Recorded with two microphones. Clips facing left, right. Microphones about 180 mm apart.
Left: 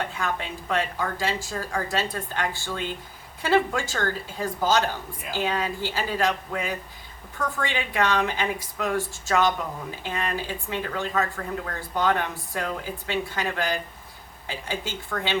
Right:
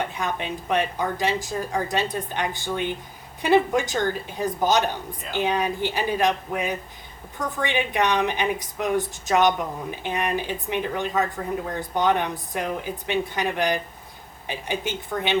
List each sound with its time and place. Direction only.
0.0 s a woman's voice: 20° right (ahead or behind)